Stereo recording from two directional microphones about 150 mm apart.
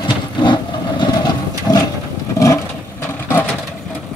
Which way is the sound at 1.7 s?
25° left (ahead or behind).